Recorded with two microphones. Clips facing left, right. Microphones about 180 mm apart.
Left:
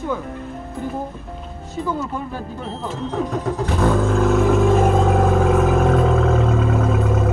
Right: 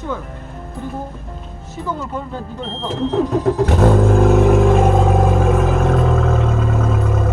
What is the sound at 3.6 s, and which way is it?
Vehicle, 45° right (ahead or behind).